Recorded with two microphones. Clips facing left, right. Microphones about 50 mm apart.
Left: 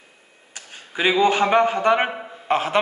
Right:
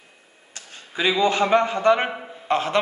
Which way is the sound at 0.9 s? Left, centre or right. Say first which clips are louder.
Left 2 dB; left.